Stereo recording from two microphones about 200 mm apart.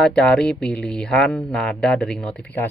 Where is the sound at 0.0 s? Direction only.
5° left (ahead or behind).